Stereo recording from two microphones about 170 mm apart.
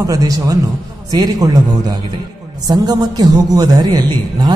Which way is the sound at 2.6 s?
20° right (ahead or behind).